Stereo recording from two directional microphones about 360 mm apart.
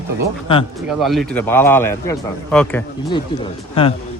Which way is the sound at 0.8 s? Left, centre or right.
Centre.